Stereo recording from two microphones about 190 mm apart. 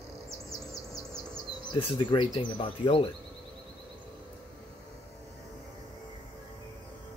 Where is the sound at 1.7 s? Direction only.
25° left (ahead or behind).